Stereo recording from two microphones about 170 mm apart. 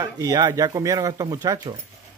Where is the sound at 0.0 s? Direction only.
25° right (ahead or behind).